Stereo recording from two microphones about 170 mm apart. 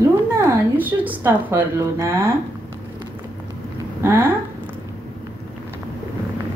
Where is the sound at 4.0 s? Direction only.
15° right (ahead or behind).